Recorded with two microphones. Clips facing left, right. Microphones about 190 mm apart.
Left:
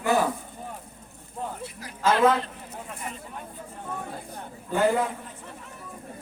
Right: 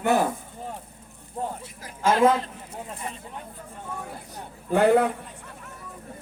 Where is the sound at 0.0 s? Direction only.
60° right (ahead or behind).